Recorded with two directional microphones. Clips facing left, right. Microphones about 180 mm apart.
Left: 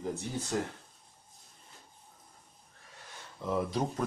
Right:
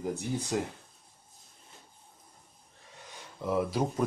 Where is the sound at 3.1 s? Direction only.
15° right (ahead or behind).